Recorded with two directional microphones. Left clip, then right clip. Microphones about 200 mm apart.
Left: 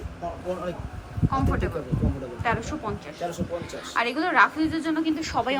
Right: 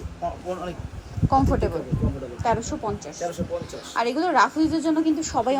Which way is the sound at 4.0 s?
20° right (ahead or behind).